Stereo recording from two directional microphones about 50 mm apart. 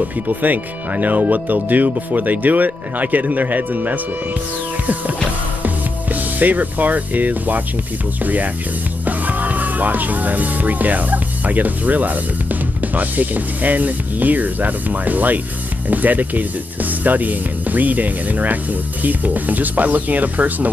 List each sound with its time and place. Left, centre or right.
0.4 s speech: right
6.4 s speech: right